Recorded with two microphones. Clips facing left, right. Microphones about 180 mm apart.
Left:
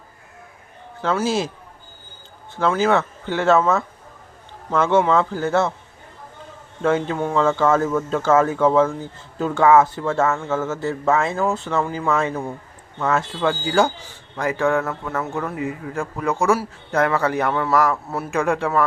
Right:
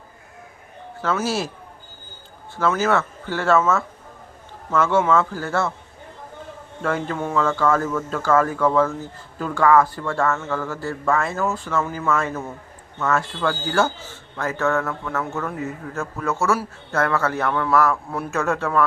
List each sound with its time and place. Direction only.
2.6 s a man's voice: 15° left (ahead or behind)
4.7 s a man's voice: 20° left (ahead or behind)
6.8 s a man's voice: 20° left (ahead or behind)